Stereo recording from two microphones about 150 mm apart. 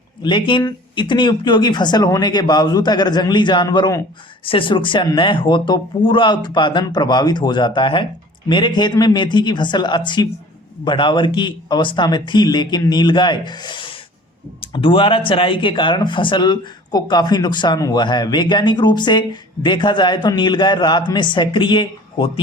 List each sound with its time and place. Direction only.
0.2 s speech: 30° left (ahead or behind)